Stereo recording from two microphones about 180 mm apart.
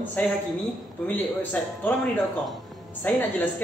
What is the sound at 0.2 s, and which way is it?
A man's voice, 10° left (ahead or behind).